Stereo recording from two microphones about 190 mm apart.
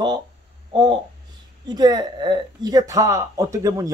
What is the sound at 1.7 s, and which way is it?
Speech, 20° right (ahead or behind).